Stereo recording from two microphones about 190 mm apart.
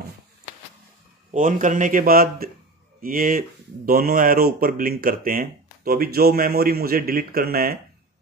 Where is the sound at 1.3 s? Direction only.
45° right (ahead or behind).